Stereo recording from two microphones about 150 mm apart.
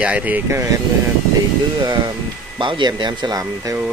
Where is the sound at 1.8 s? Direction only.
30° right (ahead or behind).